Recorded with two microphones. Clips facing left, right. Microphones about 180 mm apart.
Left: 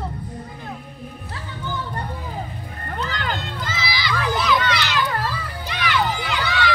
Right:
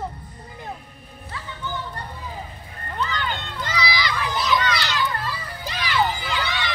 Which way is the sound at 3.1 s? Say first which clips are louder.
Left 1 dB; 90° left.